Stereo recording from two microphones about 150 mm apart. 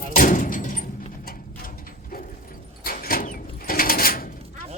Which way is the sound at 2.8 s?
75° left (ahead or behind).